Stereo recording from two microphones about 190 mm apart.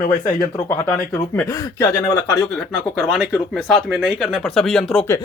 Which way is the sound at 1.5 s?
15° left (ahead or behind).